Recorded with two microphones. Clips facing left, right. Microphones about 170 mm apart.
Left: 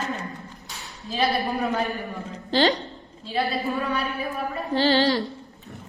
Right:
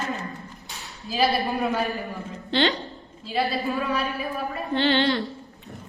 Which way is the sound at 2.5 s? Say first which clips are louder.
Left 2 dB; 40° left (ahead or behind).